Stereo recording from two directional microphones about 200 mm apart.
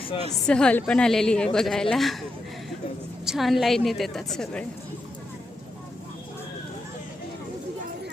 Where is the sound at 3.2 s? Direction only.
Centre (ahead or behind).